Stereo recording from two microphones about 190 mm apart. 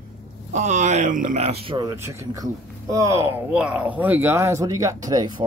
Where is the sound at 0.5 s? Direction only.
40° right (ahead or behind).